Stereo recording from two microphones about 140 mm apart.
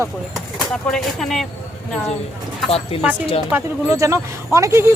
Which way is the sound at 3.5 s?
20° right (ahead or behind).